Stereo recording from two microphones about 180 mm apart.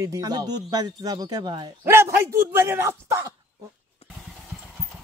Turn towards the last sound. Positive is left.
turn(degrees=-15)  # may be behind; listen again after turning